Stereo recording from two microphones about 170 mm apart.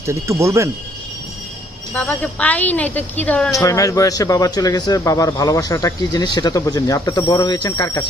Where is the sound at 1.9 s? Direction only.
10° left (ahead or behind).